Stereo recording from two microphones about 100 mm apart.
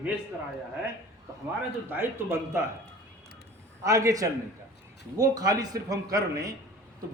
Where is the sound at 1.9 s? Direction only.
20° right (ahead or behind).